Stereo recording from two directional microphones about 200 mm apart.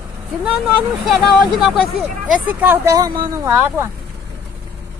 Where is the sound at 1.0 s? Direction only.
Centre (ahead or behind).